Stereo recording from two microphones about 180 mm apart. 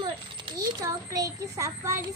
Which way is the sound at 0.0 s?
25° right (ahead or behind).